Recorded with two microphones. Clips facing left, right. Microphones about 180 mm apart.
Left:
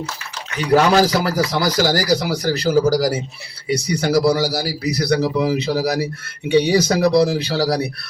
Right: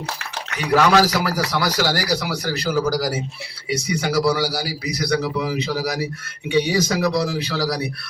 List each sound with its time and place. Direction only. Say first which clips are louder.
0.7 s speech: left 2 dB; 25° left (ahead or behind)